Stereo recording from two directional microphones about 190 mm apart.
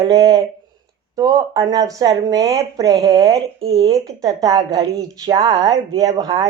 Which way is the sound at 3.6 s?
30° right (ahead or behind).